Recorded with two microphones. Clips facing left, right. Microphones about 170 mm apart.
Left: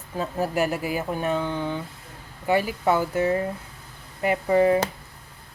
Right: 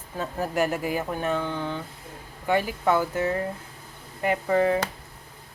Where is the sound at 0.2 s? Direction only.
10° left (ahead or behind).